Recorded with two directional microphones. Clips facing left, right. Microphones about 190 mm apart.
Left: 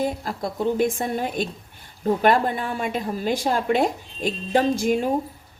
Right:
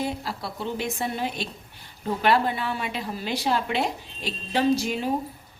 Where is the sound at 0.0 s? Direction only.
45° left (ahead or behind).